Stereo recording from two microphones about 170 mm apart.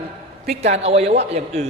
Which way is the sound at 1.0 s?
90° right.